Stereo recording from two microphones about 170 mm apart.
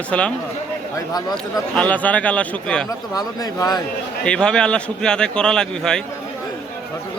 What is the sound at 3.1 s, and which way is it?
Speech, 20° left (ahead or behind).